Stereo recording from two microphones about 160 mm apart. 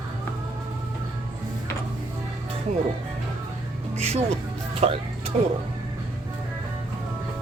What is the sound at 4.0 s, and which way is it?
Music, 40° right (ahead or behind).